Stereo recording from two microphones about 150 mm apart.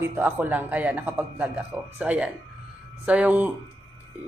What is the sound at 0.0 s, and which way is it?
A woman's voice, 15° right (ahead or behind).